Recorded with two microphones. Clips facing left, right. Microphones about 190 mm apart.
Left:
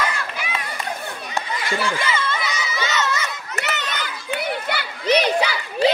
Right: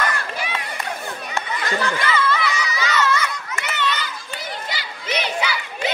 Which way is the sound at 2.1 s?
25° left (ahead or behind).